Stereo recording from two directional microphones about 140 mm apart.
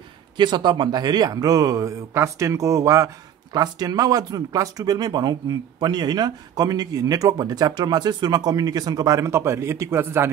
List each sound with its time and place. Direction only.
0.4 s speech: 35° right (ahead or behind); by 10.3 s 15° right (ahead or behind)